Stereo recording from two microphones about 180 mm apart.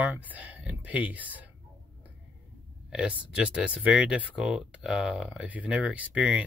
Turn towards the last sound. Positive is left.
turn(degrees=-5)  # may be behind; listen again after turning